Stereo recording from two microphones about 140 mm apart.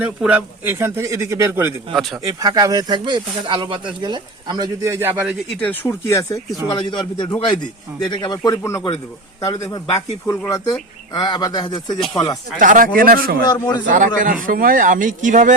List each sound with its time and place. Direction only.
0.0 s a man's voice: 10° right (ahead or behind)
2.0 s speech: centre (ahead or behind)
2.4 s speech: 25° right (ahead or behind)
5.5 s speech: 10° left (ahead or behind); by 12.2 s 40° left (ahead or behind)
12.5 s speech: 75° right (ahead or behind)
13.5 s speech: 30° left (ahead or behind)
13.9 s speech: 70° right (ahead or behind)
14.4 s speech: 90° right; by 15.5 s 65° right (ahead or behind)